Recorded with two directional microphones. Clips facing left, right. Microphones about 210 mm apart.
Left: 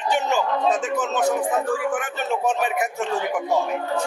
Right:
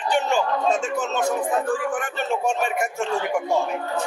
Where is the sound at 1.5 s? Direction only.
5° left (ahead or behind).